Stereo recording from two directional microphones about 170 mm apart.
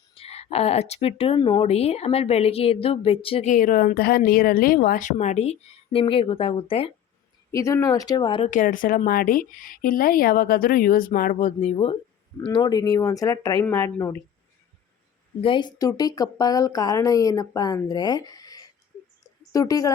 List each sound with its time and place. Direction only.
0.1 s speech: 35° left (ahead or behind)
3.5 s speech: 55° left (ahead or behind); by 6.9 s 35° left (ahead or behind)
7.5 s speech: 20° left (ahead or behind)
8.4 s speech: 50° left (ahead or behind); by 13.9 s 20° left (ahead or behind)
15.4 s speech: 30° left (ahead or behind)